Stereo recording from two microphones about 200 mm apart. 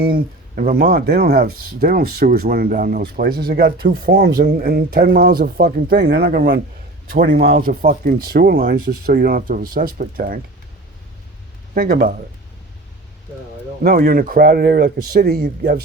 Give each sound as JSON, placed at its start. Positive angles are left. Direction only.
{"t": 0.0, "sound": "speech", "side_deg": -50}
{"t": 5.4, "sound": "speech", "side_deg": -45}
{"t": 11.7, "sound": "speech", "side_deg": -45}
{"t": 13.8, "sound": "speech", "side_deg": -45}